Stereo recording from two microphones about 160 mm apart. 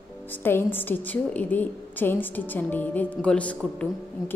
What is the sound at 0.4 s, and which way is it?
A woman's voice, 15° left (ahead or behind).